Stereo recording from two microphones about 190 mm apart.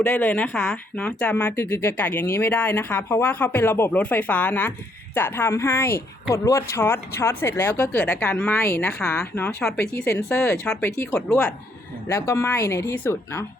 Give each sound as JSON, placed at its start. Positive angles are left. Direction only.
{"t": 0.0, "sound": "speech", "side_deg": 10}